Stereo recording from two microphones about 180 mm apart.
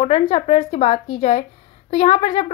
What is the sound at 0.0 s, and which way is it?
Speech, 35° left (ahead or behind).